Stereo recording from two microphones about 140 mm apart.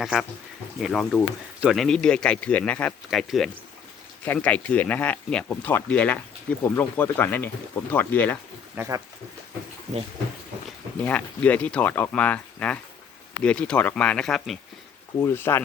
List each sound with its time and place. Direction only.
0.0 s speech: centre (ahead or behind)
3.1 s speech: centre (ahead or behind)
4.3 s speech: 10° left (ahead or behind)
8.7 s speech: 15° right (ahead or behind)
11.0 s speech: 10° left (ahead or behind)
15.2 s speech: 15° left (ahead or behind)